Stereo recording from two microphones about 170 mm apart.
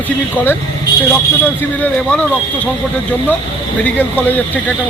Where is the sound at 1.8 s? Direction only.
10° left (ahead or behind).